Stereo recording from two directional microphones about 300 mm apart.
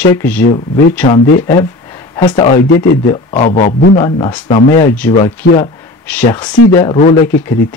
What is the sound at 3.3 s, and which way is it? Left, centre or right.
Speech, left.